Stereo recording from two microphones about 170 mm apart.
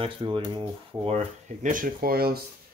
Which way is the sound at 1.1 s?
45° right (ahead or behind).